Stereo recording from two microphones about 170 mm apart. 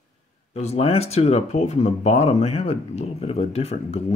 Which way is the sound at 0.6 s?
40° left (ahead or behind).